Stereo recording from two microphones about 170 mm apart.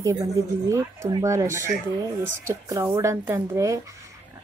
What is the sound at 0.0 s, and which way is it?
Speech, 20° right (ahead or behind).